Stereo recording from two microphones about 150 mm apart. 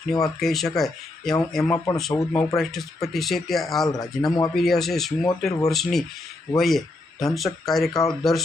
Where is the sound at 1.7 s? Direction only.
20° left (ahead or behind).